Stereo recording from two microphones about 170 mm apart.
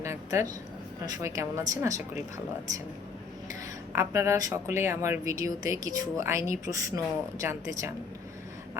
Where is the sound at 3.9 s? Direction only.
15° right (ahead or behind).